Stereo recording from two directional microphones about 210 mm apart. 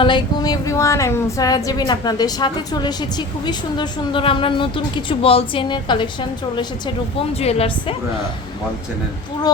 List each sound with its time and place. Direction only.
0.0 s speech: 20° left (ahead or behind)
7.3 s speech: 30° left (ahead or behind)